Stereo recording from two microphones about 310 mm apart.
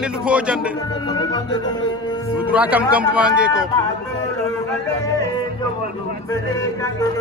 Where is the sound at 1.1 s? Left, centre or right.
Centre.